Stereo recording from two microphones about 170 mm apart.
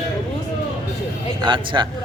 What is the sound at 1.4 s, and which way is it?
Speech, 30° right (ahead or behind).